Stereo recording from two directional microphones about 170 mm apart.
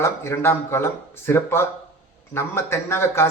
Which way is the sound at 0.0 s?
15° left (ahead or behind).